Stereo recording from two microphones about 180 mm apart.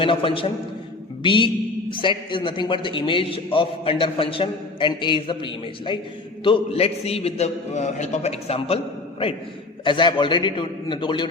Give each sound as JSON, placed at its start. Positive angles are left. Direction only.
{"t": 0.0, "sound": "a man's voice", "side_deg": 30}
{"t": 1.2, "sound": "music", "side_deg": 25}
{"t": 1.9, "sound": "a man's voice", "side_deg": 30}